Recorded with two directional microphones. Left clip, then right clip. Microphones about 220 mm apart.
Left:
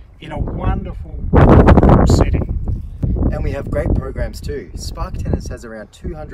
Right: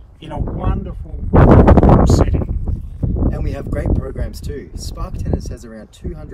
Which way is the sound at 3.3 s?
15° left (ahead or behind).